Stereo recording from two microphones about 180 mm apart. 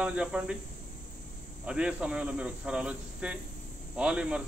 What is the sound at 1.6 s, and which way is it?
Speech, 5° right (ahead or behind).